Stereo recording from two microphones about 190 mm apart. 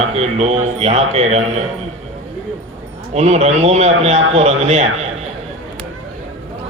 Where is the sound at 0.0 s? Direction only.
35° right (ahead or behind).